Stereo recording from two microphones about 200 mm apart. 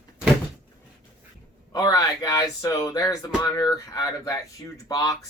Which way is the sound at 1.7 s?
15° left (ahead or behind).